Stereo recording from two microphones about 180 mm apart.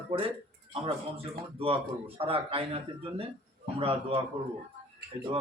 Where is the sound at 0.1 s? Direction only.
30° right (ahead or behind).